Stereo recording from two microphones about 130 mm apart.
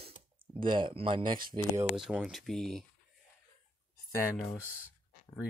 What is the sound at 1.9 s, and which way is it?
Speech, 5° right (ahead or behind).